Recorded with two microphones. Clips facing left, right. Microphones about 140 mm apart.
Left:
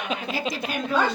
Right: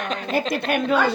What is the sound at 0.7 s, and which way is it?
Speech, 65° right (ahead or behind).